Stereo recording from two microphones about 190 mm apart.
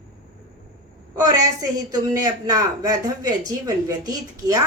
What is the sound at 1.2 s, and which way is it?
A woman's voice, 20° right (ahead or behind).